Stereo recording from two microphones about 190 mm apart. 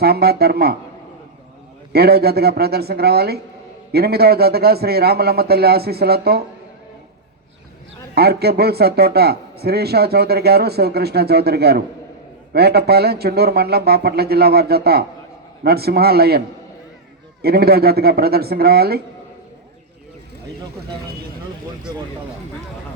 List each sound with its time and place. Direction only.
0.0 s a man's voice: 55° right (ahead or behind)
1.9 s a man's voice: 55° right (ahead or behind)
8.1 s a man's voice: 55° right (ahead or behind)
17.4 s a man's voice: 55° right (ahead or behind)